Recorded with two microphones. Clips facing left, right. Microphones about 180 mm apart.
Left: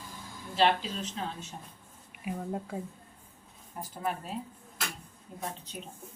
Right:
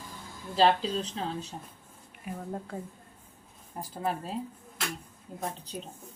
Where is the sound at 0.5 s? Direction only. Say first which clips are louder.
Right 3 dB; 35° right (ahead or behind).